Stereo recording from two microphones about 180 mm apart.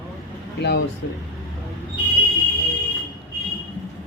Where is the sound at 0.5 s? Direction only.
70° left (ahead or behind).